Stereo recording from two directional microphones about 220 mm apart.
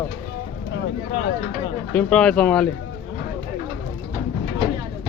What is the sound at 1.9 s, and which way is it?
Speech, 5° left (ahead or behind).